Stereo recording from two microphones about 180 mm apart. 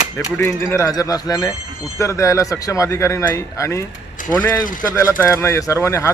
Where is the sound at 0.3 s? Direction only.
15° left (ahead or behind).